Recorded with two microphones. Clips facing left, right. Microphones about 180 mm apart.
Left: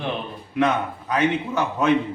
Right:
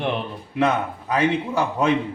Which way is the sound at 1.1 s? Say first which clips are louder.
Right 1 dB; 30° right (ahead or behind).